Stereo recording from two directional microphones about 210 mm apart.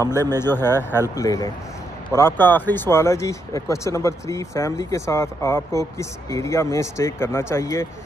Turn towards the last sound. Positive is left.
turn(degrees=15)  # may be behind; listen again after turning